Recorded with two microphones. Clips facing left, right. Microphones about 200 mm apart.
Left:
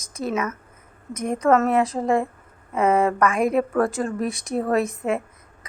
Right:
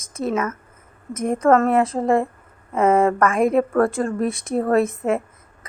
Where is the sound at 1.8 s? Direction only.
30° right (ahead or behind).